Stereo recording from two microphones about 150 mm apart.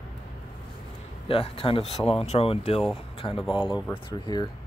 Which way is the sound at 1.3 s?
35° left (ahead or behind).